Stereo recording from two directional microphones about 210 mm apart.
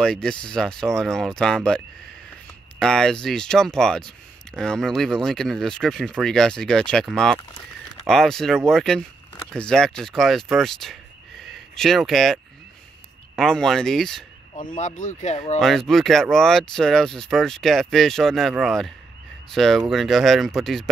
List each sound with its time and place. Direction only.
0.0 s speech: 5° left (ahead or behind)
2.8 s speech: 5° left (ahead or behind)
13.4 s speech: centre (ahead or behind)
14.8 s speech: 35° left (ahead or behind)
15.6 s speech: centre (ahead or behind)